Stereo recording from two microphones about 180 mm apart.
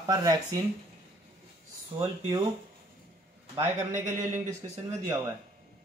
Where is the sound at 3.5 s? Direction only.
15° right (ahead or behind).